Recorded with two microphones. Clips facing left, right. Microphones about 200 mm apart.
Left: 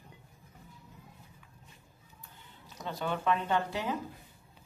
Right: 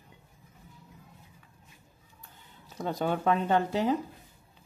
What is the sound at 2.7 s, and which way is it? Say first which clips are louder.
Speech: right 5 dB; 45° right (ahead or behind).